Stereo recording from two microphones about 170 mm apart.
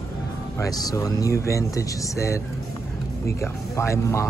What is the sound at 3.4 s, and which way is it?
Speech, 15° left (ahead or behind).